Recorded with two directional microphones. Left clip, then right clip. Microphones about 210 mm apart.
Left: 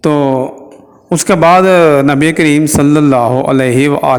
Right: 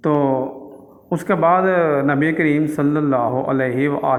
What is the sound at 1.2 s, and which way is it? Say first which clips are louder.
Speech: left 9 dB; 60° left (ahead or behind).